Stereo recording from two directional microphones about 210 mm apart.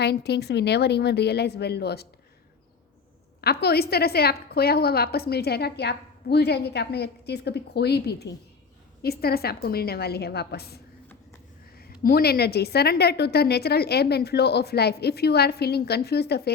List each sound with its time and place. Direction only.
0.0 s a woman's voice: 50° left (ahead or behind)
3.4 s a woman's voice: 50° left (ahead or behind)
11.8 s a woman's voice: 45° left (ahead or behind)